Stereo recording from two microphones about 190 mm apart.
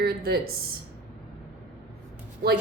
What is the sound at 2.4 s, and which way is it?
Speech, 55° right (ahead or behind).